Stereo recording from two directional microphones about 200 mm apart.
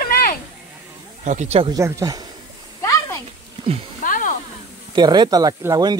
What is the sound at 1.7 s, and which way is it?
Speech, 15° right (ahead or behind).